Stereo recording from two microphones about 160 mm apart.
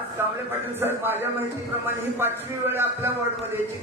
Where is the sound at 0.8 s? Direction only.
15° right (ahead or behind).